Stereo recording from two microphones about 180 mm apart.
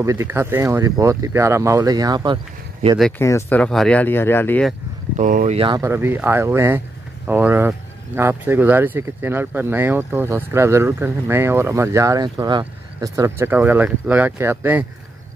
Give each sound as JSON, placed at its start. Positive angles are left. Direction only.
{"t": 0.0, "sound": "speech", "side_deg": -15}
{"t": 3.0, "sound": "speech", "side_deg": 10}
{"t": 5.1, "sound": "speech", "side_deg": -45}
{"t": 5.8, "sound": "speech", "side_deg": -15}